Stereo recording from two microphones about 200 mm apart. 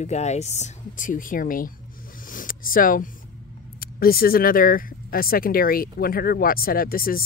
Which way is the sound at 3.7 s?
50° left (ahead or behind).